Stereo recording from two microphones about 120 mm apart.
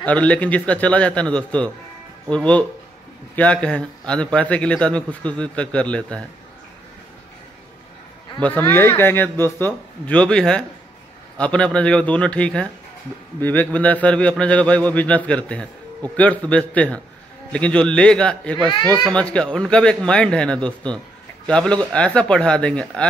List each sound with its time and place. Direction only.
0.0 s a man's voice: 10° left (ahead or behind)
8.4 s a man's voice: 15° left (ahead or behind)